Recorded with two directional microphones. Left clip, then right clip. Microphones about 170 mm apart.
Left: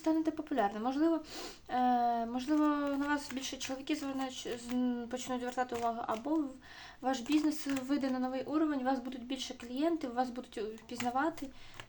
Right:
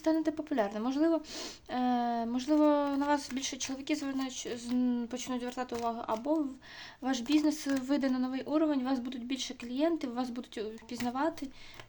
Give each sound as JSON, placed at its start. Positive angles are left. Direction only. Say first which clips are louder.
{"t": 0.0, "sound": "speech", "louder": "right 2 dB", "side_deg": -40}